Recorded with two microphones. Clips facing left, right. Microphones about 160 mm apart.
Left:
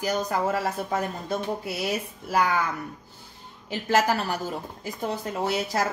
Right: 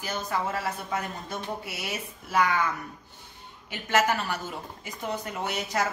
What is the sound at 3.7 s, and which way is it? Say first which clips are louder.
Speech: left 2 dB; 35° left (ahead or behind).